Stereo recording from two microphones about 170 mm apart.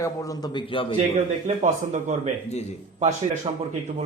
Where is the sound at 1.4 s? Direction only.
45° right (ahead or behind).